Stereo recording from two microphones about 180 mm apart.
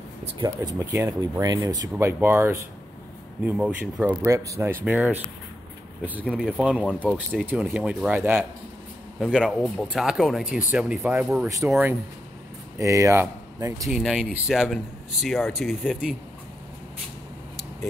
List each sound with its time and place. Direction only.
0.2 s speech: 35° right (ahead or behind)
0.6 s speech: 15° right (ahead or behind)
6.2 s speech: 5° left (ahead or behind)
6.5 s speech: 5° right (ahead or behind)
9.2 s speech: 5° left (ahead or behind); by 11.7 s 15° right (ahead or behind)
12.7 s speech: 15° right (ahead or behind)
13.8 s speech: 5° right (ahead or behind)